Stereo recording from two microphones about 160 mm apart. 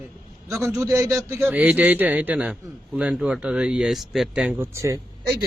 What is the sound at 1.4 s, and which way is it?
A man's voice, 10° right (ahead or behind).